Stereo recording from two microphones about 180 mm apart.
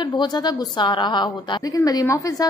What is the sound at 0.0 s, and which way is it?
A woman's voice, 25° left (ahead or behind).